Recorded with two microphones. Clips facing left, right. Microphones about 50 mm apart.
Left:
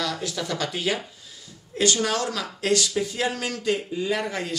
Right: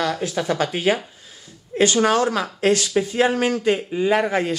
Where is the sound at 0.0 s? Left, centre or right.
Right.